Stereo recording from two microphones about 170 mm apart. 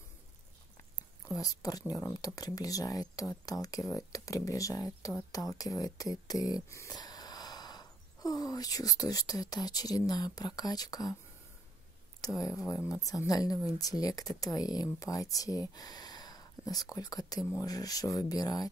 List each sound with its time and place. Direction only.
1.3 s speech: 20° left (ahead or behind)
12.2 s speech: 20° left (ahead or behind)